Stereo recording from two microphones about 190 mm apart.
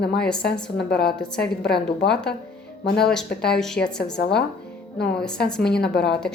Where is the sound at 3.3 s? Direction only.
5° left (ahead or behind).